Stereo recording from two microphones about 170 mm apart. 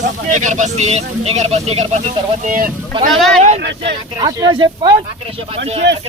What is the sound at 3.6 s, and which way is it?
Speech, 90° right.